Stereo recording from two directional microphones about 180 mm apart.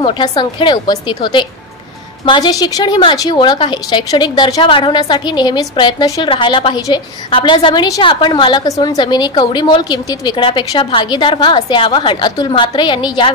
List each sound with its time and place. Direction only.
0.0 s a woman's voice: 25° left (ahead or behind)